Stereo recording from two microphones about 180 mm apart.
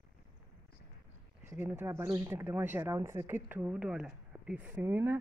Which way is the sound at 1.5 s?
10° right (ahead or behind).